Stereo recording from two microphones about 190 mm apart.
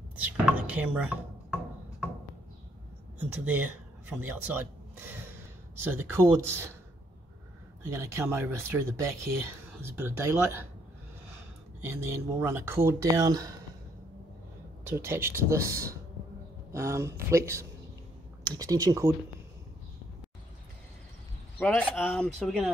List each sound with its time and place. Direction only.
0.1 s a sound: 10° right (ahead or behind)
3.2 s speech: 10° right (ahead or behind)
7.9 s speech: 15° right (ahead or behind)
11.8 s speech: 15° right (ahead or behind)
14.9 s speech: 15° right (ahead or behind)
21.5 s speech: 5° left (ahead or behind)